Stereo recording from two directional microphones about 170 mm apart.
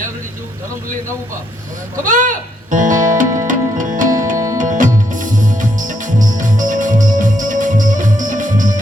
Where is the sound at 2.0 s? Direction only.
50° right (ahead or behind).